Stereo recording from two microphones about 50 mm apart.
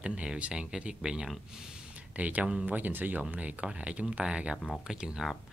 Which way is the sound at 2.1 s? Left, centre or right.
Right.